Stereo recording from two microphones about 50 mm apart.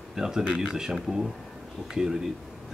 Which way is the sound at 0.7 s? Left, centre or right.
Centre.